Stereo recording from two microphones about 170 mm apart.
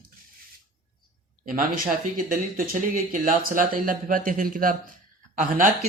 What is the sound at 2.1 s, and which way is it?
Speech, 55° right (ahead or behind).